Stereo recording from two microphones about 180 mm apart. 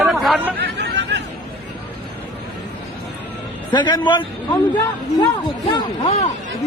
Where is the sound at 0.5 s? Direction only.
80° right.